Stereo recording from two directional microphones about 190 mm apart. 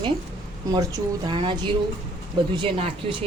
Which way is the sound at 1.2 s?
25° right (ahead or behind).